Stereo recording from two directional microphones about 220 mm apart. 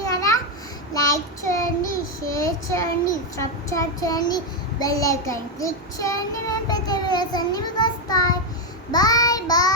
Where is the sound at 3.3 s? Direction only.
15° left (ahead or behind).